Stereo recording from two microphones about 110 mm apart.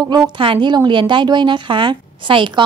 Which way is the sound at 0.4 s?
50° right (ahead or behind).